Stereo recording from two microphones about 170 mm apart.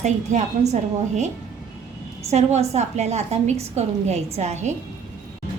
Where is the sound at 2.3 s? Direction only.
40° right (ahead or behind).